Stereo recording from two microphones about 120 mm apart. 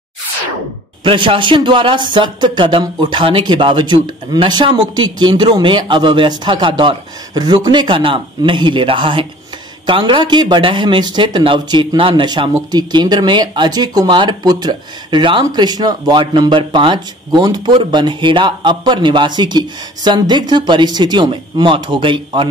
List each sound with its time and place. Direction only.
1.0 s speech: 45° right (ahead or behind)